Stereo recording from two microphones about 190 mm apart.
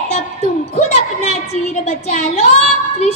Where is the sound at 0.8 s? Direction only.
35° left (ahead or behind).